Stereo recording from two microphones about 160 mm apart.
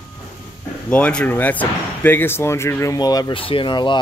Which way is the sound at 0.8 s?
10° left (ahead or behind).